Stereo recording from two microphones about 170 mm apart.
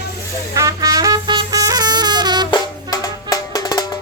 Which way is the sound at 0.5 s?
20° right (ahead or behind).